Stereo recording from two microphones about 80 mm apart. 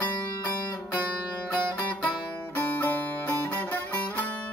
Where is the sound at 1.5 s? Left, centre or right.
Centre.